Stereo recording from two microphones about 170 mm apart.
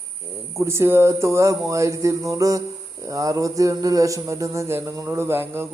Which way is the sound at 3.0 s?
20° right (ahead or behind).